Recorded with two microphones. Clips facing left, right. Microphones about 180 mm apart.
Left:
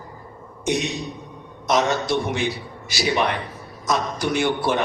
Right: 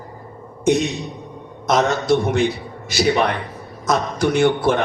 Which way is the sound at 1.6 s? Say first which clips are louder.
Right 4 dB; 55° right (ahead or behind).